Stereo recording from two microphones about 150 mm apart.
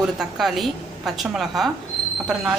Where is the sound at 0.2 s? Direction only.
Centre (ahead or behind).